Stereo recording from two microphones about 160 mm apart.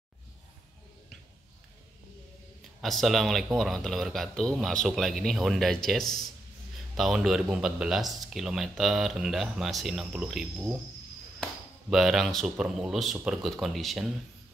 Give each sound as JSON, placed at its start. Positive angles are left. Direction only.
{"t": 2.8, "sound": "speech", "side_deg": 0}
{"t": 11.9, "sound": "speech", "side_deg": 0}